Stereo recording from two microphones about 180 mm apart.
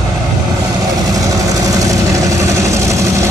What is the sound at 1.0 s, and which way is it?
Vehicle, 20° right (ahead or behind).